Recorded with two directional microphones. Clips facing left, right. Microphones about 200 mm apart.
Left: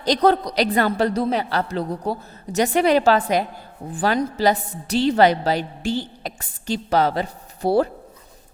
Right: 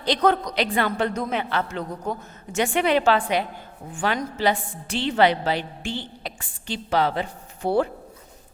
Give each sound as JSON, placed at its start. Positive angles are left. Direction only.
{"t": 0.0, "sound": "a woman's voice", "side_deg": 40}